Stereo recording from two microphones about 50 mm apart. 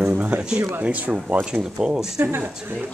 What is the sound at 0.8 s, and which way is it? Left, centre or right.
Speech, right.